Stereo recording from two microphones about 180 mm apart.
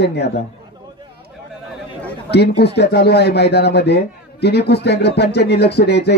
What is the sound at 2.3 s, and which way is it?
A man's voice, 65° left (ahead or behind).